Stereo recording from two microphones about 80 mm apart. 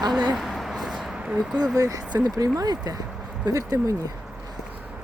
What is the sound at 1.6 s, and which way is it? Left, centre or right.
Speech, right.